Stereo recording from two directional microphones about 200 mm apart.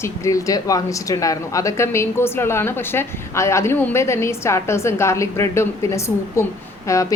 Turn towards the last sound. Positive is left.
turn(degrees=15)  # may be behind; listen again after turning